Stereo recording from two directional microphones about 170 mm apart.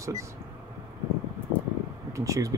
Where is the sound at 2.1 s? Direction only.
20° right (ahead or behind).